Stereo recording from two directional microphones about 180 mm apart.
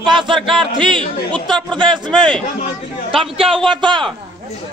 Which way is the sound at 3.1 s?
30° right (ahead or behind).